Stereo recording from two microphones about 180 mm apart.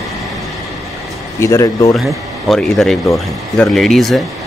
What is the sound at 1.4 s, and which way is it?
Speech, 15° left (ahead or behind).